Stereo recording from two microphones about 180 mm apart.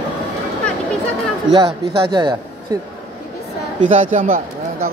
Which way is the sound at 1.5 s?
30° right (ahead or behind).